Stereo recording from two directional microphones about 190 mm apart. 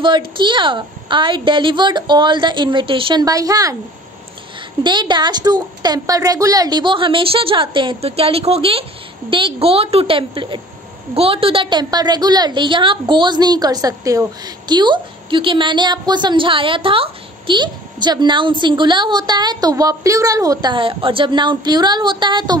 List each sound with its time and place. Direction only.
0.0 s a woman's voice: 25° right (ahead or behind)
4.8 s a woman's voice: 25° right (ahead or behind)